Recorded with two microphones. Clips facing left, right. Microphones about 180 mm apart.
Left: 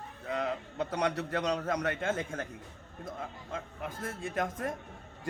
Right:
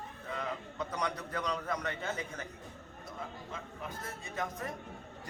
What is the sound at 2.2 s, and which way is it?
Speech, 50° left (ahead or behind).